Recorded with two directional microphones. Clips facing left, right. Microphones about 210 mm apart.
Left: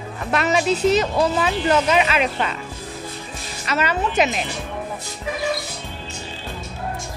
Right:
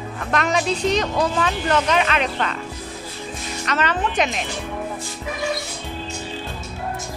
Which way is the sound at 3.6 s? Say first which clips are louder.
Left 1 dB; 10° left (ahead or behind).